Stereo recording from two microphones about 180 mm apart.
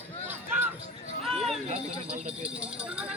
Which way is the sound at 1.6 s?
35° right (ahead or behind).